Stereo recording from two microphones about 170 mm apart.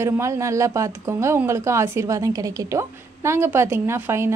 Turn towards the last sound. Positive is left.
turn(degrees=-15)  # may be behind; listen again after turning